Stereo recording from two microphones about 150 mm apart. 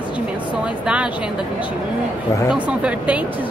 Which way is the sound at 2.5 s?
5° right (ahead or behind).